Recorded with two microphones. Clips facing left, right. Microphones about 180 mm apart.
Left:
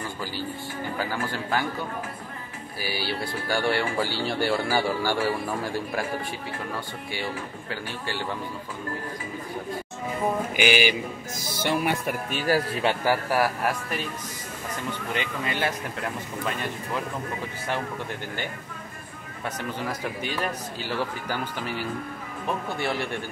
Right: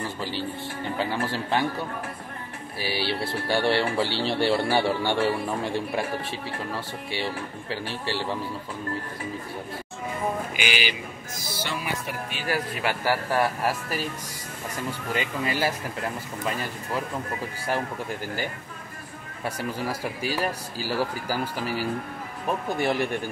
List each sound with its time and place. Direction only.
0.2 s speech: 25° right (ahead or behind)
2.8 s speech: 30° right (ahead or behind)
7.7 s speech: 30° right (ahead or behind)
10.5 s speech: 50° left (ahead or behind)
12.8 s a man's voice: 15° left (ahead or behind)
13.4 s speech: 5° right (ahead or behind)
19.4 s speech: 10° right (ahead or behind)
21.5 s speech: 35° right (ahead or behind)
22.8 s speech: 15° right (ahead or behind)